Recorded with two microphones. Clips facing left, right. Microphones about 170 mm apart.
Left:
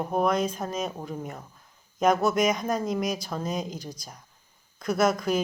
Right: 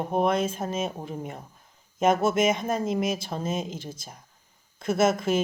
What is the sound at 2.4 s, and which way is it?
Speech, 25° right (ahead or behind).